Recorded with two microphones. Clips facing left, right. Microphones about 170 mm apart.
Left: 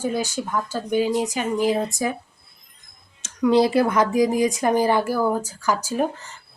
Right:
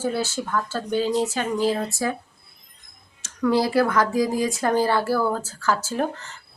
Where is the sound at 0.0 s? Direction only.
15° left (ahead or behind).